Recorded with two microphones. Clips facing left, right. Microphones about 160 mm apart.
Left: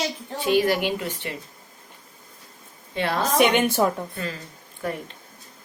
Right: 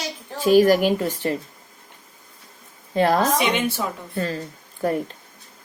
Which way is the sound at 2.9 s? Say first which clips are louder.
Right 6 dB; 40° right (ahead or behind).